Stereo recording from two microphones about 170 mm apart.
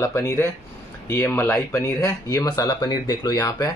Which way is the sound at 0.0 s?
15° left (ahead or behind).